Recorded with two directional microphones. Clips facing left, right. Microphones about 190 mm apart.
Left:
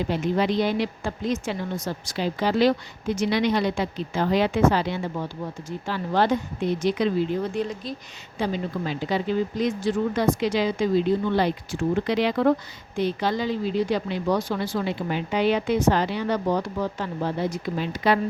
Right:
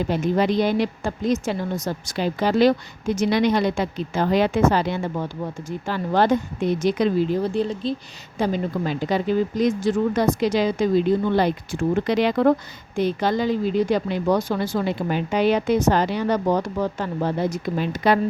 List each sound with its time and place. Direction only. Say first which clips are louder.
0.1 s speech: right 3 dB; 45° right (ahead or behind); by 7.9 s 30° right (ahead or behind)
8.4 s speech: right 4 dB; 45° right (ahead or behind)